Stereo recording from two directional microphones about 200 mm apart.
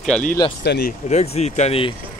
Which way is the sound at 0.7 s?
50° left (ahead or behind).